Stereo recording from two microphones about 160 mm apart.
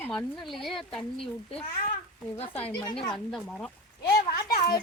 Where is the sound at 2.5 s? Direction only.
10° left (ahead or behind).